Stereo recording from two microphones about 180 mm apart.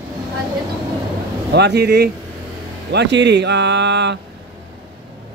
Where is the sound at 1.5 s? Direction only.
70° right (ahead or behind).